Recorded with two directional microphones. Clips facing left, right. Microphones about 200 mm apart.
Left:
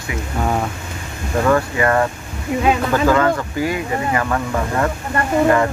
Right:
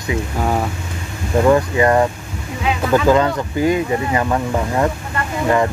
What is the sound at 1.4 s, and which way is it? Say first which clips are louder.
Speech: right 3 dB; 20° right (ahead or behind).